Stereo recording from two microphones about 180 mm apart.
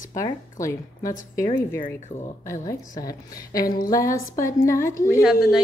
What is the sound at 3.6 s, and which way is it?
Speech, 55° left (ahead or behind).